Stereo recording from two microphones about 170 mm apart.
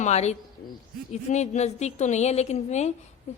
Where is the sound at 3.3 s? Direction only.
40° left (ahead or behind).